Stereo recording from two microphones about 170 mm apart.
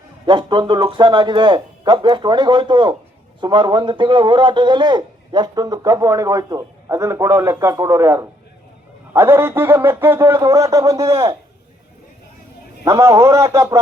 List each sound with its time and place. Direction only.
0.3 s a man's voice: 25° right (ahead or behind)
12.8 s a man's voice: 15° right (ahead or behind)